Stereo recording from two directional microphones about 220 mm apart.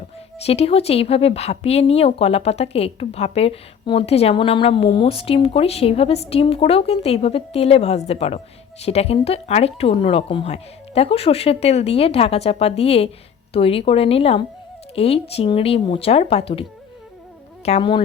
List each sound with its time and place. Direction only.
0.3 s speech: 30° left (ahead or behind)
17.7 s speech: 25° left (ahead or behind)